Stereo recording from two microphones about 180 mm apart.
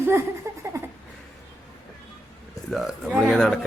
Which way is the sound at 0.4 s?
15° right (ahead or behind).